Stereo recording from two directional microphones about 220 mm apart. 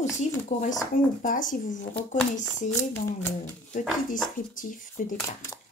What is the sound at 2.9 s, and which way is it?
Speech, 10° left (ahead or behind).